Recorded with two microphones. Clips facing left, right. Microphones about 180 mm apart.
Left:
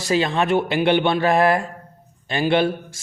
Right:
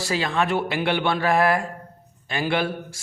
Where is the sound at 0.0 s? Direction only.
20° left (ahead or behind).